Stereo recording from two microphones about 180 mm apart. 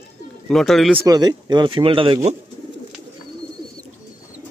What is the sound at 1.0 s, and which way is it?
Speech, 20° right (ahead or behind).